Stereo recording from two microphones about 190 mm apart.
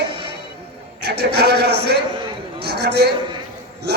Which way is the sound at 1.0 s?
60° right (ahead or behind).